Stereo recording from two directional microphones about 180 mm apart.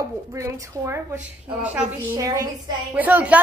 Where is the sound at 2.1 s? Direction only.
20° right (ahead or behind).